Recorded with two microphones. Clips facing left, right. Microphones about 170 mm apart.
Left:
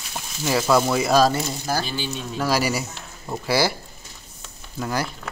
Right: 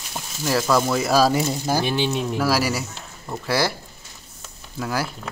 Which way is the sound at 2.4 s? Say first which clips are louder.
Left 2 dB; centre (ahead or behind).